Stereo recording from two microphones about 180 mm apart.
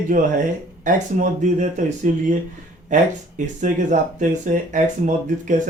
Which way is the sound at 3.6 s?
45° right (ahead or behind).